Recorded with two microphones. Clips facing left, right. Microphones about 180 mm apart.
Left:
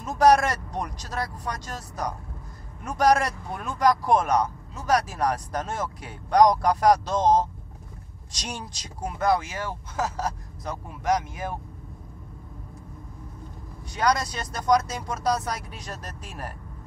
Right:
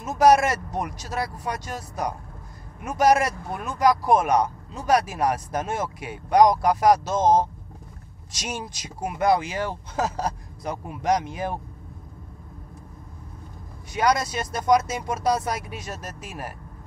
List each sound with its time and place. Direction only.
0.0 s speech: 5° right (ahead or behind); by 11.5 s 20° right (ahead or behind)
13.9 s speech: 10° right (ahead or behind)